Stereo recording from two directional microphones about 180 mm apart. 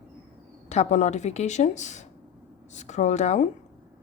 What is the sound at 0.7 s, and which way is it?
A woman's voice, 40° left (ahead or behind).